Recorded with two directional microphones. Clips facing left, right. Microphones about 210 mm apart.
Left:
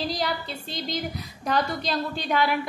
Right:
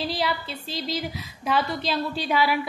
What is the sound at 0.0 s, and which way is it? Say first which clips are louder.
A woman's voice: right 1 dB; 5° right (ahead or behind).